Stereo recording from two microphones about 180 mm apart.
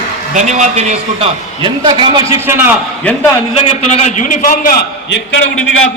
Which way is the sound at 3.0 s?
5° left (ahead or behind).